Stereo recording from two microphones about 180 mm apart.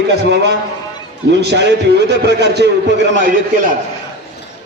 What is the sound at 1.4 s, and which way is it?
A man's voice, 70° right (ahead or behind).